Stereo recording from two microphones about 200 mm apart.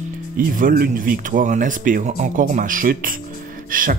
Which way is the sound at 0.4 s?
45° right (ahead or behind).